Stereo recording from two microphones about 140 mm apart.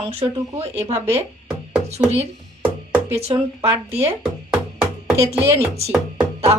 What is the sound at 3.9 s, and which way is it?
Speech, 45° right (ahead or behind).